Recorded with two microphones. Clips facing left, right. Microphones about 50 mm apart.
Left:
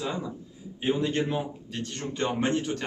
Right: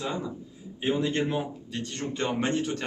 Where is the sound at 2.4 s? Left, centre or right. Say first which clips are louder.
Left 1 dB; left.